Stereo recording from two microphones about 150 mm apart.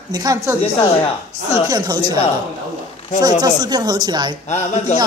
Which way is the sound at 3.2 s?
25° right (ahead or behind).